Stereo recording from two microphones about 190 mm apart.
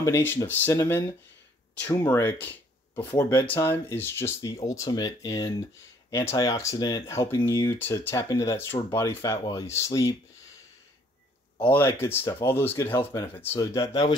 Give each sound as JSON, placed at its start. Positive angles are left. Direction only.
{"t": 0.0, "sound": "speech", "side_deg": 10}
{"t": 11.6, "sound": "speech", "side_deg": 10}